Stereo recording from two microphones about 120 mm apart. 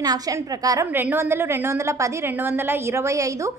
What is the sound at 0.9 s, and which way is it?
A woman's voice, 15° right (ahead or behind).